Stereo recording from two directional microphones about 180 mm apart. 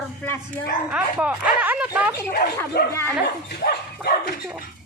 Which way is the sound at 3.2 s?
60° left (ahead or behind).